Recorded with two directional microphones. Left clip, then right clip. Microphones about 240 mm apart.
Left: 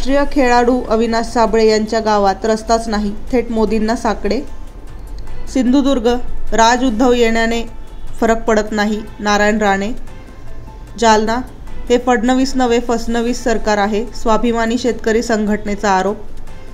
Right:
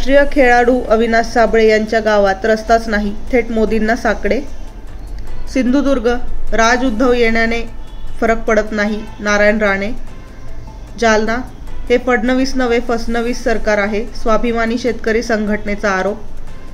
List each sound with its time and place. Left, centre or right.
0.0 s speech: centre
5.5 s speech: centre
11.0 s speech: left